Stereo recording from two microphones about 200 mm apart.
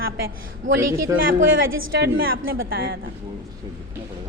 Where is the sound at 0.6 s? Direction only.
75° right (ahead or behind).